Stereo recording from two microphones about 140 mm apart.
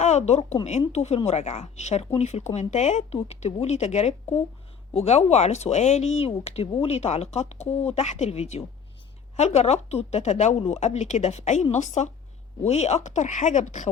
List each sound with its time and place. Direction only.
0.0 s speech: 55° left (ahead or behind)